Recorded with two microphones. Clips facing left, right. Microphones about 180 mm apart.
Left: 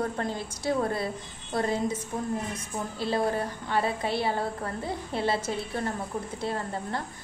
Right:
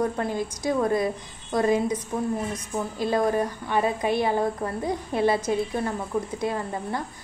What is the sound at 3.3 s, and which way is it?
A woman's voice, 15° right (ahead or behind).